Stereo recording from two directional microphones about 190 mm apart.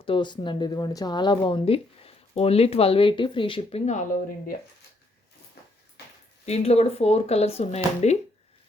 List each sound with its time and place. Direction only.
0.0 s speech: 25° left (ahead or behind)
6.4 s speech: 35° left (ahead or behind)